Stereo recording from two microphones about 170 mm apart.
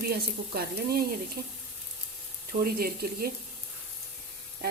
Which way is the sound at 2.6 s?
60° right (ahead or behind).